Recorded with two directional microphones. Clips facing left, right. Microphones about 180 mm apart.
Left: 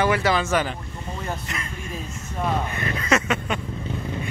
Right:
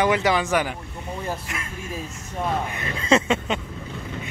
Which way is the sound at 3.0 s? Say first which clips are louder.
Right 4 dB; 25° right (ahead or behind).